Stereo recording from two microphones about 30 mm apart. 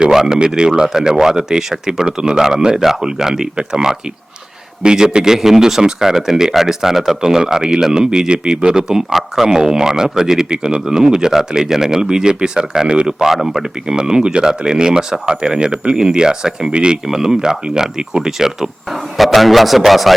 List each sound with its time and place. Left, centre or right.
0.1 s speech: centre
0.3 s speech: right
0.8 s speech: centre
9.1 s speech: centre
9.5 s speech: centre
13.1 s speech: centre
13.8 s speech: right
17.1 s speech: centre
18.9 s a man's voice: centre